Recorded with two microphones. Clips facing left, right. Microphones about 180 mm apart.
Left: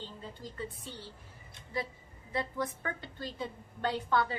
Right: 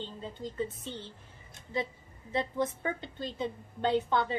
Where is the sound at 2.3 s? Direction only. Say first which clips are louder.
Right 4 dB; 20° right (ahead or behind).